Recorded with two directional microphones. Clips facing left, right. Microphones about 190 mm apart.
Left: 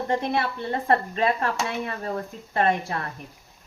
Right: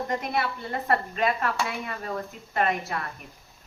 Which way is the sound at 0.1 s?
30° left (ahead or behind).